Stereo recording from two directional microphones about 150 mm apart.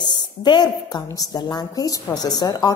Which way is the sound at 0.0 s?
30° left (ahead or behind).